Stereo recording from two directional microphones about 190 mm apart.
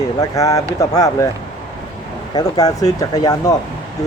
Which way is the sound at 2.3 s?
20° left (ahead or behind).